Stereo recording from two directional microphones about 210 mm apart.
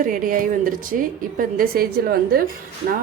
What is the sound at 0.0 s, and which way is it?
A woman's voice, 40° right (ahead or behind).